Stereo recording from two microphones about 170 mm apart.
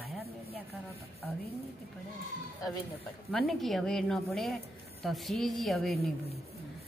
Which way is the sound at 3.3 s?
Centre (ahead or behind).